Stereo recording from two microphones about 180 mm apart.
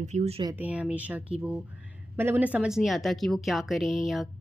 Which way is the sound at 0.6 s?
5° right (ahead or behind).